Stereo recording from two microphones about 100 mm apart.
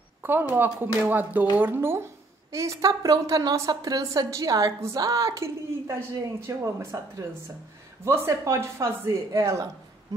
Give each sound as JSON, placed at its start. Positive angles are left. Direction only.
{"t": 0.2, "sound": "a woman's voice", "side_deg": -20}
{"t": 8.0, "sound": "speech", "side_deg": -30}